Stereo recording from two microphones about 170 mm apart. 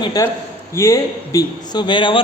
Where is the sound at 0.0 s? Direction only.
20° left (ahead or behind).